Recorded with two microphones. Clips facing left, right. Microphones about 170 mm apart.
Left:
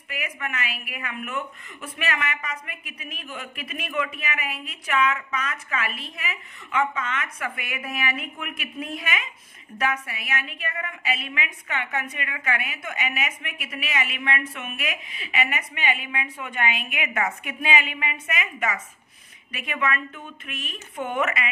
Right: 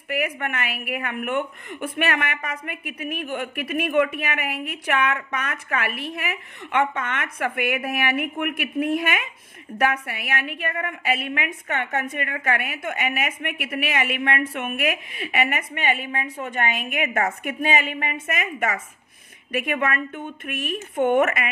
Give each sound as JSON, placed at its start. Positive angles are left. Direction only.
{"t": 0.1, "sound": "a woman's voice", "side_deg": -55}